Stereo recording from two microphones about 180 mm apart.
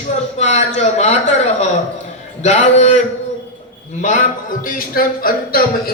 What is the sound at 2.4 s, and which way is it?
A man's voice, 40° left (ahead or behind).